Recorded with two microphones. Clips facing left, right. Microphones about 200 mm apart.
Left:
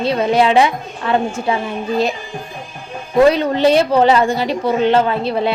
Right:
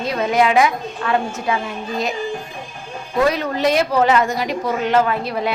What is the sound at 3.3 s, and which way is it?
A woman's voice, 30° left (ahead or behind).